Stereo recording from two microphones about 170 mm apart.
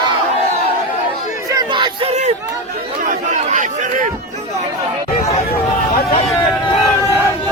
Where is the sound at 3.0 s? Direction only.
50° right (ahead or behind).